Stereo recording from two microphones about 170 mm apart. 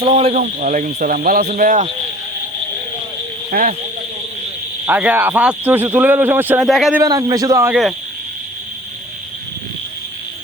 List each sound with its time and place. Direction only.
0.0 s a man's voice: 35° right (ahead or behind)
3.5 s a man's voice: 50° right (ahead or behind)
4.9 s speech: 10° right (ahead or behind)
6.7 s speech: centre (ahead or behind)
7.0 s a man's voice: 20° right (ahead or behind)